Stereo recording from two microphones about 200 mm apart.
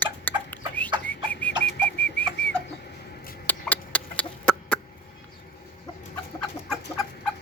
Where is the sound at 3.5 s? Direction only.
10° left (ahead or behind).